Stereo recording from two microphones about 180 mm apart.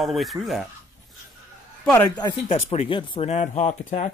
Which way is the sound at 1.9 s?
10° left (ahead or behind).